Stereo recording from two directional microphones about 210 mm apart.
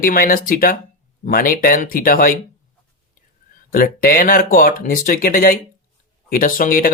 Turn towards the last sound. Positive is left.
turn(degrees=40)  # may be behind; listen again after turning